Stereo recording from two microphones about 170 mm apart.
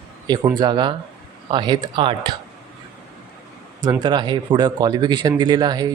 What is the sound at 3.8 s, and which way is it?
Speech, 25° right (ahead or behind).